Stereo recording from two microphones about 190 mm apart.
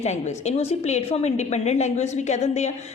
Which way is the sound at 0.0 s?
35° left (ahead or behind).